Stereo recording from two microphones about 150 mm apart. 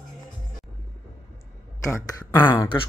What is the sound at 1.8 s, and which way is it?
Speech, 20° left (ahead or behind).